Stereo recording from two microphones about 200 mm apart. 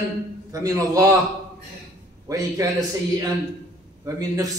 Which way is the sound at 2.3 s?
15° right (ahead or behind).